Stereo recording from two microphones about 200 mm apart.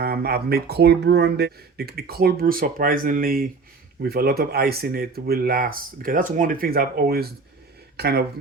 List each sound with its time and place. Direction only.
0.0 s speech: 50° right (ahead or behind)